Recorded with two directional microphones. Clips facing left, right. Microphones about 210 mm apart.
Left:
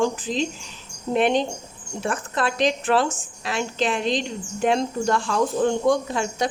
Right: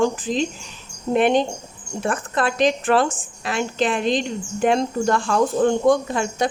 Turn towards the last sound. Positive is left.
turn(degrees=-50)  # may be behind; listen again after turning